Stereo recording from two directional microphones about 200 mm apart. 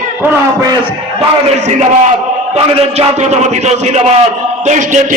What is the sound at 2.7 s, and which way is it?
A man's voice, 30° right (ahead or behind).